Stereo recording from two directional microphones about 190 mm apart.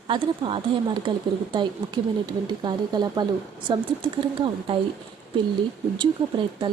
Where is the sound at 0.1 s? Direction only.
25° right (ahead or behind).